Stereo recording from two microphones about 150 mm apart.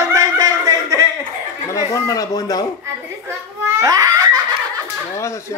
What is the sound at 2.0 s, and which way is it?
Speech, 25° left (ahead or behind).